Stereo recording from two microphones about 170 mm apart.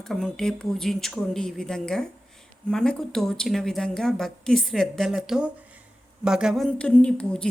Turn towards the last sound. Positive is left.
turn(degrees=5)  # may be behind; listen again after turning